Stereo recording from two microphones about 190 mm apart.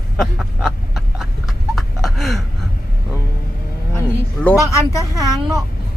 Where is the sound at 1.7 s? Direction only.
Centre (ahead or behind).